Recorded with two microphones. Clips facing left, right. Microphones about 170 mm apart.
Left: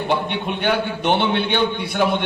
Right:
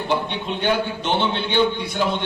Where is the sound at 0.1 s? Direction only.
55° left (ahead or behind).